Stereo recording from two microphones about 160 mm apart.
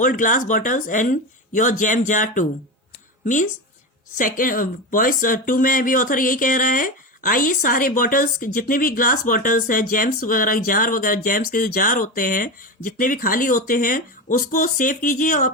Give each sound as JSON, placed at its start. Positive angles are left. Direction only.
{"t": 0.0, "sound": "speech", "side_deg": 55}
{"t": 4.2, "sound": "speech", "side_deg": 60}